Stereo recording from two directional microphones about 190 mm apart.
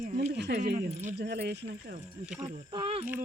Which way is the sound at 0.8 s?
40° right (ahead or behind).